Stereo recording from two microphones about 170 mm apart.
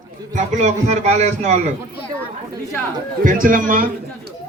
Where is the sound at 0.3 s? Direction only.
45° right (ahead or behind).